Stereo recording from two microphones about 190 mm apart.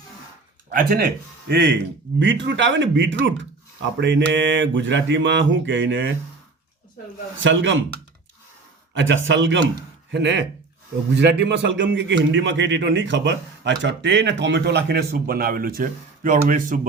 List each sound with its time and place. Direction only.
0.7 s a man's voice: 50° right (ahead or behind); by 6.1 s 75° right (ahead or behind)
7.4 s a man's voice: 75° right (ahead or behind)
9.0 s a man's voice: 80° right
10.1 s a man's voice: 65° right (ahead or behind); by 16.8 s 45° right (ahead or behind)